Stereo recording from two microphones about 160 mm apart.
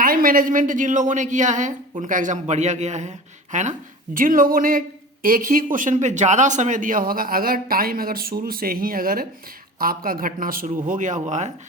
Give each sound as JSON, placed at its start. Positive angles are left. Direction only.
{"t": 0.0, "sound": "a man's voice", "side_deg": -60}